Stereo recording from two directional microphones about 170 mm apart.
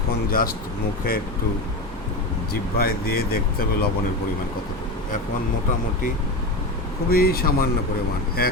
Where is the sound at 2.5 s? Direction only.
65° left (ahead or behind).